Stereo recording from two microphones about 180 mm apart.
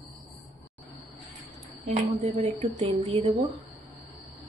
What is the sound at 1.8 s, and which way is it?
Speech, 35° right (ahead or behind).